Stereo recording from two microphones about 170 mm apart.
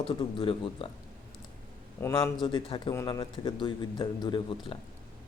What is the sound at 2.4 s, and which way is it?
A man's voice, 30° left (ahead or behind).